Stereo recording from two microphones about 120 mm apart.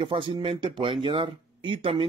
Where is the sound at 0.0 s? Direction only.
45° right (ahead or behind).